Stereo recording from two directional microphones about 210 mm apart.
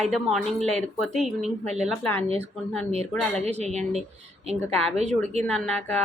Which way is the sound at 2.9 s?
30° right (ahead or behind).